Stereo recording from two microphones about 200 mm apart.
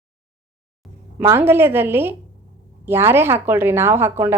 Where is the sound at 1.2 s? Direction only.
10° right (ahead or behind).